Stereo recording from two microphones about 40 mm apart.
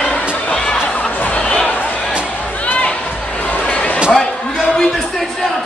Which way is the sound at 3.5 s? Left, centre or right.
Left.